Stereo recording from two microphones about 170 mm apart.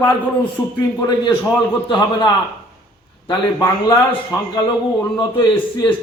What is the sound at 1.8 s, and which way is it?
Speech, 25° left (ahead or behind).